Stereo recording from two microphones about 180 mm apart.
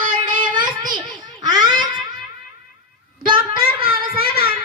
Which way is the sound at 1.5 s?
20° right (ahead or behind).